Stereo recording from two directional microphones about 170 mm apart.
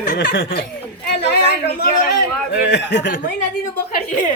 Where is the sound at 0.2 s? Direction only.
80° left.